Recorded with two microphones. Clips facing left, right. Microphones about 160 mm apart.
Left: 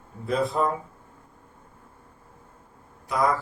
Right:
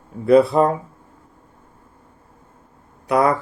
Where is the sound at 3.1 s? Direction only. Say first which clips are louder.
Right 7 dB; 70° right (ahead or behind).